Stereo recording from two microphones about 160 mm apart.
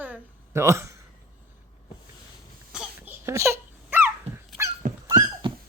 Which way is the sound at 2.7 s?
10° right (ahead or behind).